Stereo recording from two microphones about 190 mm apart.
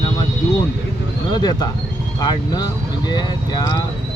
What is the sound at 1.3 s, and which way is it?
Speech, 20° left (ahead or behind).